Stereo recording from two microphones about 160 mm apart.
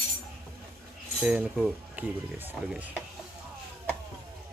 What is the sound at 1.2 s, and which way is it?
Speech, 5° right (ahead or behind).